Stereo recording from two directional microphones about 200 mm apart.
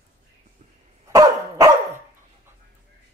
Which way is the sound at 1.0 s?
15° right (ahead or behind).